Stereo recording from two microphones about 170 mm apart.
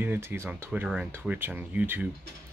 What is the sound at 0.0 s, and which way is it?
Speech, 10° right (ahead or behind).